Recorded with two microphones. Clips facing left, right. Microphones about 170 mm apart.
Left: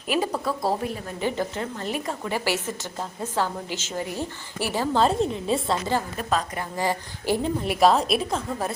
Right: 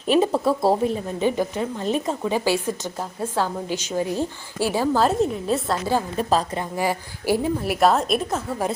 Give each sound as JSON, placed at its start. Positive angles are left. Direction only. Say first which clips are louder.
{"t": 0.1, "sound": "speech", "louder": "right 7 dB", "side_deg": -25}
{"t": 1.2, "sound": "a woman's voice", "louder": "right 4 dB", "side_deg": -15}
{"t": 6.1, "sound": "speech", "louder": "right 5 dB", "side_deg": -30}
{"t": 6.7, "sound": "a woman's voice", "louder": "right 1 dB", "side_deg": -10}